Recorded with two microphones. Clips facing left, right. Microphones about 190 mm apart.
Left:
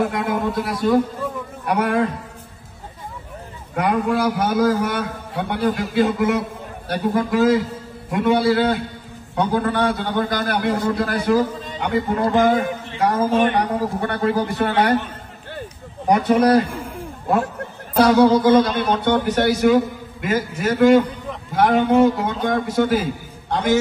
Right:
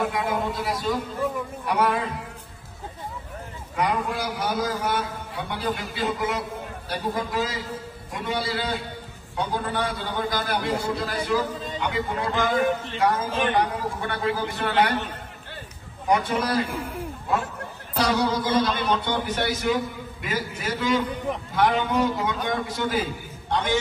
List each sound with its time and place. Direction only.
0.0 s a sound: 55° left (ahead or behind)
1.7 s a man's voice: 60° left (ahead or behind)
3.7 s a man's voice: 55° left (ahead or behind)
13.3 s a man's voice: 55° left (ahead or behind)
13.7 s speech: 45° left (ahead or behind)
16.1 s speech: 50° left (ahead or behind)
17.9 s speech: 55° left (ahead or behind)
21.9 s a man's voice: 65° left (ahead or behind)
23.5 s a man's voice: 40° left (ahead or behind)